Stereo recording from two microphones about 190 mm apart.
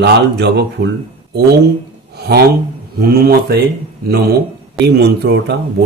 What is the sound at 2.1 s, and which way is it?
Speech, 60° right (ahead or behind).